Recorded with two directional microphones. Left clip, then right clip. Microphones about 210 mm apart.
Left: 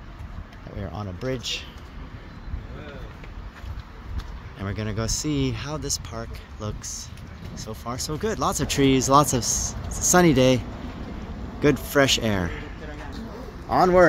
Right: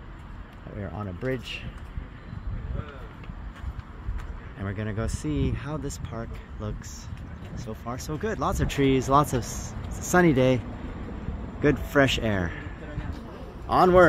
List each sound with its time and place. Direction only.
0.7 s a sound: centre (ahead or behind)
4.6 s speech: 10° left (ahead or behind)
7.8 s a man's voice: 5° left (ahead or behind)
9.2 s speech: 20° left (ahead or behind)
11.6 s a man's voice: 5° left (ahead or behind)
13.7 s a man's voice: 5° right (ahead or behind)